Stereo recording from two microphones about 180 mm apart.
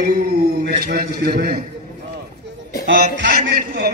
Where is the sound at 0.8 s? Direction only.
55° right (ahead or behind).